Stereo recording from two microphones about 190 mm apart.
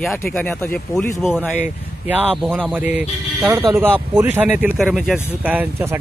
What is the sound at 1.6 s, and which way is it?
Speech, 10° right (ahead or behind).